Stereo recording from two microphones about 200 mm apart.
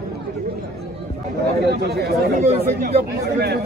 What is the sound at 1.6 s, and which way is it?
Speech, 55° right (ahead or behind).